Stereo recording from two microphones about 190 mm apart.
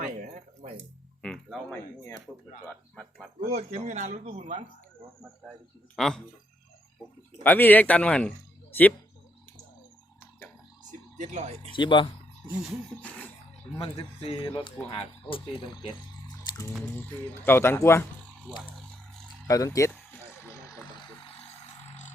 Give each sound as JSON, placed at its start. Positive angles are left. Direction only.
{"t": 0.0, "sound": "a sound", "side_deg": -40}
{"t": 1.2, "sound": "music", "side_deg": 5}
{"t": 2.3, "sound": "speech", "side_deg": 0}
{"t": 3.5, "sound": "speech", "side_deg": -40}
{"t": 6.0, "sound": "speech", "side_deg": 0}
{"t": 7.4, "sound": "speech", "side_deg": 10}
{"t": 11.2, "sound": "speech", "side_deg": -35}
{"t": 11.7, "sound": "speech", "side_deg": 25}
{"t": 12.5, "sound": "speech", "side_deg": -5}
{"t": 13.0, "sound": "speech", "side_deg": 5}
{"t": 13.7, "sound": "speech", "side_deg": 20}
{"t": 19.5, "sound": "a sound", "side_deg": 15}
{"t": 21.2, "sound": "a sound", "side_deg": 30}